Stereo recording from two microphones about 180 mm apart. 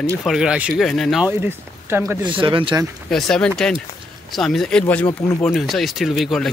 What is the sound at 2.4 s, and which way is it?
Speech, 25° right (ahead or behind).